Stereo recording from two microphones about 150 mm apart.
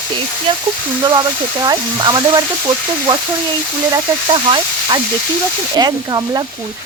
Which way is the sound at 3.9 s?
30° right (ahead or behind).